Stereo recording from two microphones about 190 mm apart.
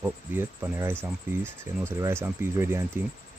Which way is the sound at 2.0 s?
15° right (ahead or behind).